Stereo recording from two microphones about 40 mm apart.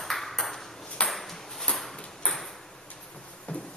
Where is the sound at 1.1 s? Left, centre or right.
Centre.